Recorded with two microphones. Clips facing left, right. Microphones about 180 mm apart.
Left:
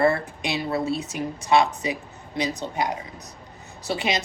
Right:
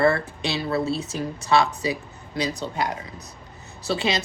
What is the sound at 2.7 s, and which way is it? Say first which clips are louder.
Speech: left 1 dB; 15° left (ahead or behind).